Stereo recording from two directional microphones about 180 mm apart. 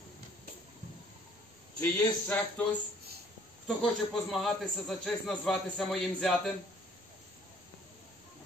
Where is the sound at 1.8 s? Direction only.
10° left (ahead or behind).